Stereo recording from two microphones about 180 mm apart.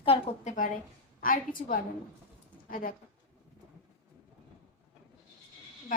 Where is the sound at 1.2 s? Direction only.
50° left (ahead or behind).